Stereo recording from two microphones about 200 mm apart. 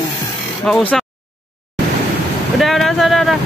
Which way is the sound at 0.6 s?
5° left (ahead or behind).